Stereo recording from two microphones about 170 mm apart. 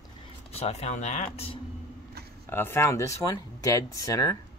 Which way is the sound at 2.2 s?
70° right (ahead or behind).